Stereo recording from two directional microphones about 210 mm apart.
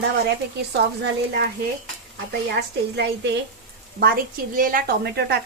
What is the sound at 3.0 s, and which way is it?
Speech, 60° right (ahead or behind).